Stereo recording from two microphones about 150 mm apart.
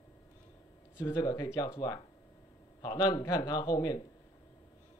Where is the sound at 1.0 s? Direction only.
20° left (ahead or behind).